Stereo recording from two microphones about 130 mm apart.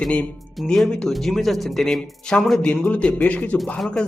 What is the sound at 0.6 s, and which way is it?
A man's voice, 5° left (ahead or behind).